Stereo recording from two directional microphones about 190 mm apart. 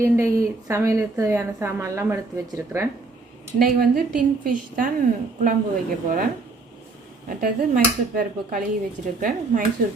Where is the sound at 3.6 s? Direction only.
45° right (ahead or behind).